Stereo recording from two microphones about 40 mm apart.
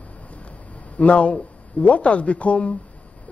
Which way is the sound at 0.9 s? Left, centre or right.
Left.